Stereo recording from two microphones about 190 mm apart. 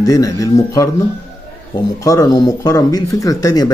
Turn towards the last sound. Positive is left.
turn(degrees=20)  # may be behind; listen again after turning